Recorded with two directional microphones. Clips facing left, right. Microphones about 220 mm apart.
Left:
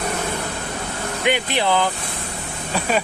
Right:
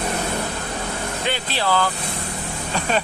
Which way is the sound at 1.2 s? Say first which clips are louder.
Left 6 dB; 15° left (ahead or behind).